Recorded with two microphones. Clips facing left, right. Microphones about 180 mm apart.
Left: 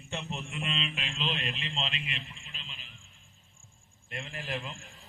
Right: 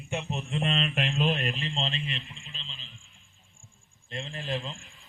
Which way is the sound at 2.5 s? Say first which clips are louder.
Right 2 dB; 30° right (ahead or behind).